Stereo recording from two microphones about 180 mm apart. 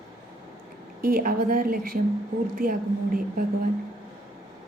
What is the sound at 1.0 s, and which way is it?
Speech, 55° right (ahead or behind).